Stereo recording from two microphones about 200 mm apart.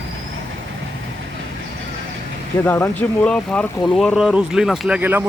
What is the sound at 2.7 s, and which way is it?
Speech, 10° left (ahead or behind).